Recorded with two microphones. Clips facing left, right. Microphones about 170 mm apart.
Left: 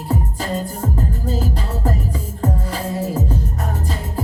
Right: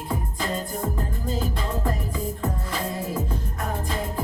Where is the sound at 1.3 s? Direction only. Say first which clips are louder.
Even; 40° left (ahead or behind).